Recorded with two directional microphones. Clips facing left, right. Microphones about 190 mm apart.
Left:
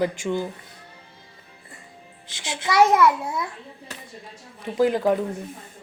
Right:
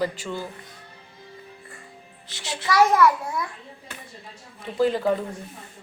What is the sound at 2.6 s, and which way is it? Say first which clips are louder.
Speech: left 1 dB; 20° left (ahead or behind).